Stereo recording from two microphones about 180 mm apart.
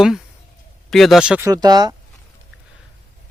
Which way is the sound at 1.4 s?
20° right (ahead or behind).